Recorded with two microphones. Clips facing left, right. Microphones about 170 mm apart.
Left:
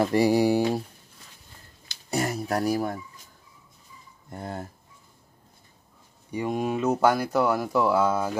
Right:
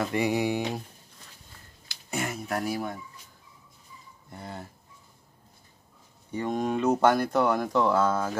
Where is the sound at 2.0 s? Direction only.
40° left (ahead or behind).